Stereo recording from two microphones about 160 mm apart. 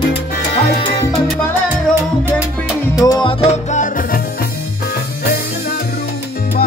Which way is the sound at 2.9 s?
25° left (ahead or behind).